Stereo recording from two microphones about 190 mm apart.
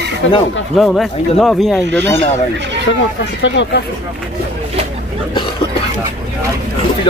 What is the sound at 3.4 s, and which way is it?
Speech, 70° left (ahead or behind).